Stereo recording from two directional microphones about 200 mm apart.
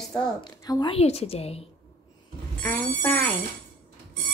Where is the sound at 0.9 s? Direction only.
30° left (ahead or behind).